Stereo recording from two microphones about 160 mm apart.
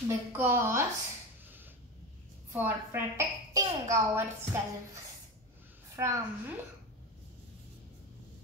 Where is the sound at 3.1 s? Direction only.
15° right (ahead or behind).